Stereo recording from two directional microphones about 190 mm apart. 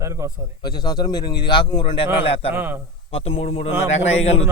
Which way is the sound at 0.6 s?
20° left (ahead or behind).